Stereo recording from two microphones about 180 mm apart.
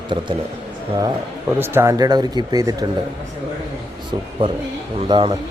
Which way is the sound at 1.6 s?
15° right (ahead or behind).